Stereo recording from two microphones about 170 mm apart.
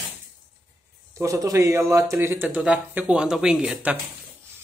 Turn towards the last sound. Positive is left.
turn(degrees=-5)  # may be behind; listen again after turning